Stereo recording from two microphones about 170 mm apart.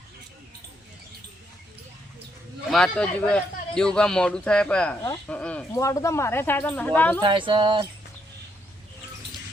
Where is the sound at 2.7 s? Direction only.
5° left (ahead or behind).